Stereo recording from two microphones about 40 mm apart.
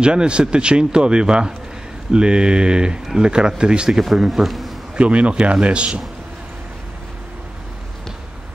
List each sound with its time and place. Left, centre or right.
0.0 s a man's voice: right
4.3 s a man's voice: centre
4.9 s a man's voice: right